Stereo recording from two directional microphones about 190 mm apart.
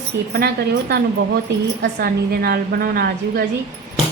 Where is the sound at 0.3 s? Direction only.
55° right (ahead or behind).